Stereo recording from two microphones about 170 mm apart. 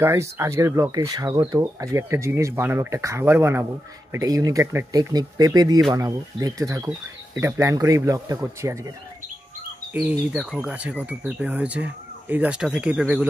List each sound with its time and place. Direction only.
0.0 s speech: 15° right (ahead or behind)
10.0 s speech: 5° right (ahead or behind)